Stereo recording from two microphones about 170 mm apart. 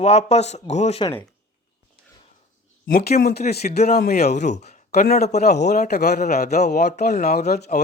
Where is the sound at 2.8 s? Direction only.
65° left (ahead or behind).